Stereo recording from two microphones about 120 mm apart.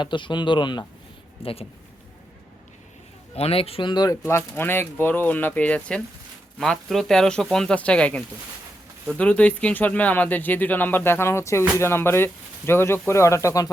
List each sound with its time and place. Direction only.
0.0 s speech: 40° left (ahead or behind)
1.4 s speech: 50° left (ahead or behind)
3.3 s speech: 55° left (ahead or behind); by 13.7 s 25° left (ahead or behind)